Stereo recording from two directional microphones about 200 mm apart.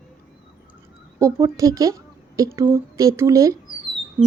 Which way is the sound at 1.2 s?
15° right (ahead or behind).